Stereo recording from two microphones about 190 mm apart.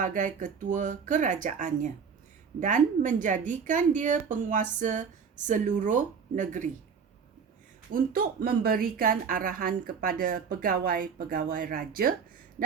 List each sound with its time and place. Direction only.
0.0 s a woman's voice: 40° right (ahead or behind)
7.9 s a woman's voice: 50° right (ahead or behind)